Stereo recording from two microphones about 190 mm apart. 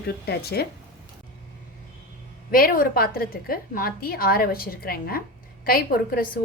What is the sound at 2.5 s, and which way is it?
A woman's voice, 50° left (ahead or behind).